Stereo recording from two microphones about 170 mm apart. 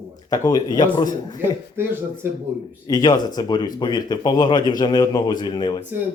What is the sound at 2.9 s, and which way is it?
Speech, 25° left (ahead or behind).